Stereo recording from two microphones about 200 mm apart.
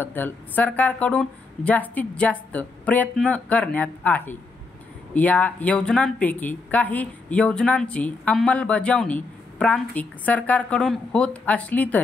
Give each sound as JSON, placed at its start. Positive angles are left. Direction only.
{"t": 0.0, "sound": "a woman's voice", "side_deg": 10}